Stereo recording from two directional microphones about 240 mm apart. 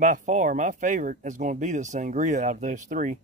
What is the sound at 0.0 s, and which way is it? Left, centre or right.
Speech, right.